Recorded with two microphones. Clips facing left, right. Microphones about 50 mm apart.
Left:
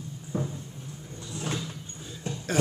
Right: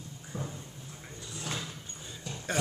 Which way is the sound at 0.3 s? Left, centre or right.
Left.